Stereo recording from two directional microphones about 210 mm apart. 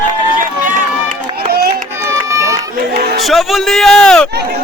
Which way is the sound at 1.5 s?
50° right (ahead or behind).